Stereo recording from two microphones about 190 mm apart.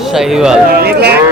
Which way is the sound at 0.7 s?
55° right (ahead or behind).